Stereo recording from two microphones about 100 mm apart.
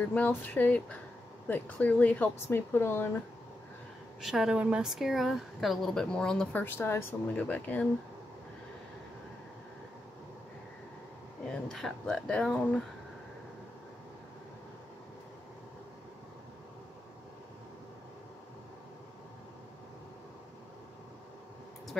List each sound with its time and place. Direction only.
0.0 s speech: 15° left (ahead or behind)
4.2 s speech: 5° right (ahead or behind)
6.5 s speech: 20° left (ahead or behind)
11.7 s speech: 5° left (ahead or behind)